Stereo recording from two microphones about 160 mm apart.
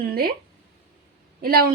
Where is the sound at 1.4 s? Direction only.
70° right (ahead or behind).